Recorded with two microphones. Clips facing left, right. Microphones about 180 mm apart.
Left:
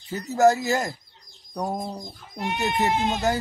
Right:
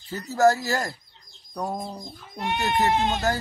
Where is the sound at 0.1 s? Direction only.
20° left (ahead or behind).